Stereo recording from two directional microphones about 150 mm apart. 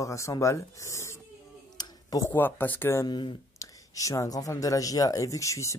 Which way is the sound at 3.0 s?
30° left (ahead or behind).